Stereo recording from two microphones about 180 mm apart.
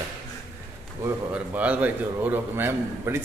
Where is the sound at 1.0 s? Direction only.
10° right (ahead or behind).